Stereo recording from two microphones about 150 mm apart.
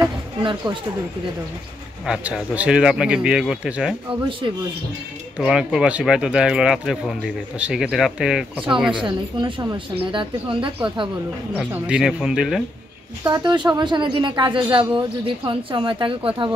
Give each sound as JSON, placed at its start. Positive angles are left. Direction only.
{"t": 0.0, "sound": "a sound", "side_deg": -30}
{"t": 2.0, "sound": "speech", "side_deg": -5}
{"t": 4.1, "sound": "speech", "side_deg": -35}
{"t": 5.4, "sound": "speech", "side_deg": -5}
{"t": 9.0, "sound": "a woman's voice", "side_deg": -30}
{"t": 11.7, "sound": "speech", "side_deg": -10}
{"t": 13.2, "sound": "speech", "side_deg": -30}